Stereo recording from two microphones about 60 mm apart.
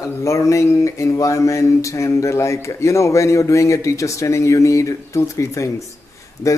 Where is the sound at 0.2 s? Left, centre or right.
Left.